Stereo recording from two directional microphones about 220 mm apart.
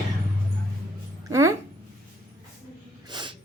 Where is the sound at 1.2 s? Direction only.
15° right (ahead or behind).